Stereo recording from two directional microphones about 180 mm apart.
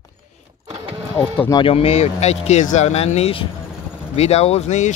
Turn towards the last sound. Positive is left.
turn(degrees=40)  # may be behind; listen again after turning